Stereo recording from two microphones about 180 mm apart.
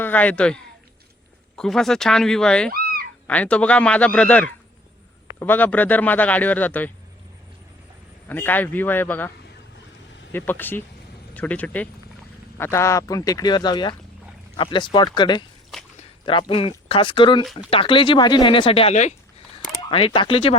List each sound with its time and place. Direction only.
0.0 s speech: 10° left (ahead or behind)
2.6 s dog: 55° right (ahead or behind)
3.2 s speech: 5° left (ahead or behind)
8.3 s speech: 10° left (ahead or behind)
10.3 s speech: 10° left (ahead or behind)
15.7 s a sound: centre (ahead or behind)
16.2 s speech: 30° left (ahead or behind)
17.4 s speech: centre (ahead or behind)
17.7 s speech: 30° left (ahead or behind)